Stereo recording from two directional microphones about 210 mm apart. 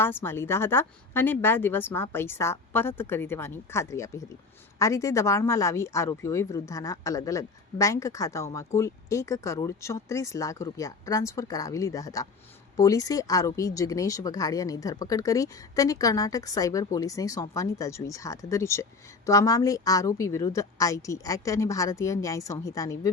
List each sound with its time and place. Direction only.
0.0 s speech: 10° left (ahead or behind)